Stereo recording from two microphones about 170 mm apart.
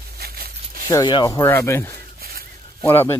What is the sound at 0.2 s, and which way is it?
Coin, 65° right (ahead or behind).